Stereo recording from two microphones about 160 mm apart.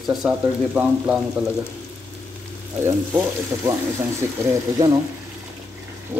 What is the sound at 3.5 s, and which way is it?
Speech, 20° right (ahead or behind).